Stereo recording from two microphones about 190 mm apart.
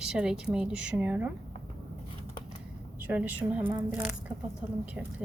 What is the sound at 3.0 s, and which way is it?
A woman's voice, 10° right (ahead or behind).